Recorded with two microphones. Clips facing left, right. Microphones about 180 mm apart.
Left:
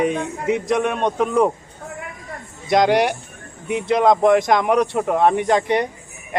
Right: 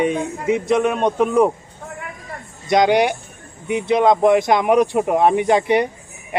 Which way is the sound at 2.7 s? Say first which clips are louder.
Right 1 dB; centre (ahead or behind).